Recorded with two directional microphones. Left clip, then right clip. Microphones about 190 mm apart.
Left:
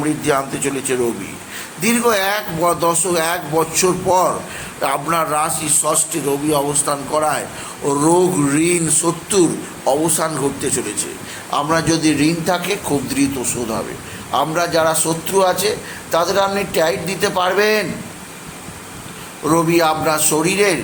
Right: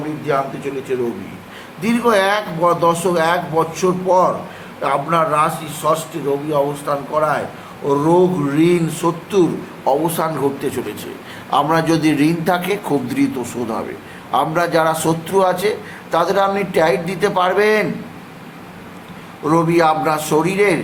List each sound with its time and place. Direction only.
0.3 s speech: 30° left (ahead or behind)
1.8 s a man's voice: 15° left (ahead or behind)
11.5 s a man's voice: 10° right (ahead or behind)
19.5 s a man's voice: centre (ahead or behind)